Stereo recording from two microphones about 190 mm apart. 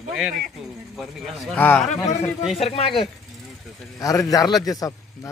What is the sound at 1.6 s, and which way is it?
Speech, 10° left (ahead or behind).